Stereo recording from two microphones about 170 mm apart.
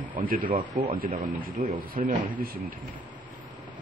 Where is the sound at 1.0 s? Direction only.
55° right (ahead or behind).